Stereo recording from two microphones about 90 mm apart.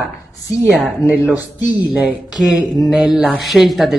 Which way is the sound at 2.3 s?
Centre (ahead or behind).